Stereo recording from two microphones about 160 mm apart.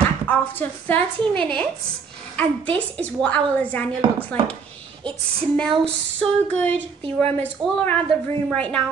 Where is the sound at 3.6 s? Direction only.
10° left (ahead or behind).